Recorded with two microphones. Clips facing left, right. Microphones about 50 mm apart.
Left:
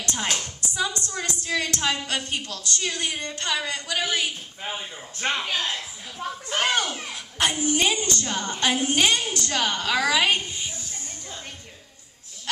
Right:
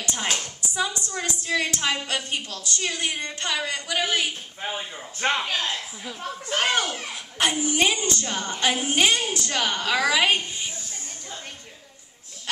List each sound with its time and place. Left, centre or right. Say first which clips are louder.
0.0 s music: even; centre
1.4 s a woman's voice: right 1 dB; centre
5.2 s a woman's voice: right 2 dB; centre
5.5 s speech: even; centre
6.6 s a woman's voice: even; centre